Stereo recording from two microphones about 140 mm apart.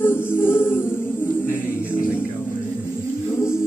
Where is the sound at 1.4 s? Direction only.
80° left.